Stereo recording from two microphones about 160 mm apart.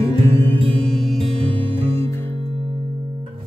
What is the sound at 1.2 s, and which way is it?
Music, 35° right (ahead or behind).